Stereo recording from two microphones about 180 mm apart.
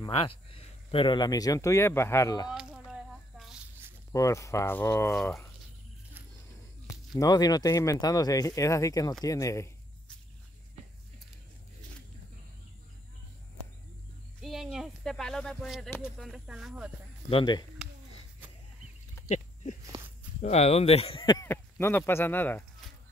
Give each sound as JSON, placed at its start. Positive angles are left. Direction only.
{"t": 0.0, "sound": "speech", "side_deg": 30}
{"t": 2.5, "sound": "squish", "side_deg": -5}
{"t": 4.1, "sound": "speech", "side_deg": 15}
{"t": 7.2, "sound": "speech", "side_deg": 20}
{"t": 14.4, "sound": "a sound", "side_deg": 0}
{"t": 16.0, "sound": "snake", "side_deg": -5}
{"t": 17.3, "sound": "speech", "side_deg": 25}
{"t": 19.2, "sound": "a sound", "side_deg": 40}
{"t": 20.4, "sound": "speech", "side_deg": 35}
{"t": 21.5, "sound": "speech", "side_deg": 15}